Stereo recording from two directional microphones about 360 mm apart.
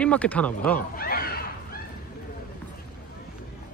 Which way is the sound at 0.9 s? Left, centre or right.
Left.